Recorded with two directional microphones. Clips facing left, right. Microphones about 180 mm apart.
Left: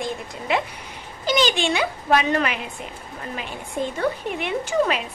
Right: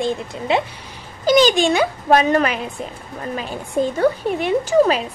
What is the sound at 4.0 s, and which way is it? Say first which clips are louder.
A child's voice: right 6 dB; 40° right (ahead or behind).